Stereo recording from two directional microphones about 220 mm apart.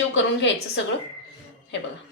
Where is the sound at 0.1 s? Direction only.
55° left (ahead or behind).